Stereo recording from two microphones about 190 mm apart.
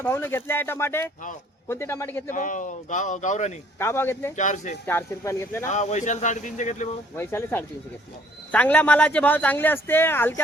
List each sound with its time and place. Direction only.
0.0 s speech: 10° left (ahead or behind)
2.3 s speech: 45° left (ahead or behind)
3.8 s speech: 15° left (ahead or behind)
4.4 s speech: 40° left (ahead or behind)
4.9 s speech: 15° left (ahead or behind)
5.6 s speech: 40° left (ahead or behind)
7.2 s speech: 10° left (ahead or behind)